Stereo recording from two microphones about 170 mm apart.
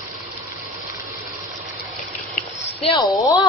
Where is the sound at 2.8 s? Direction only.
25° left (ahead or behind).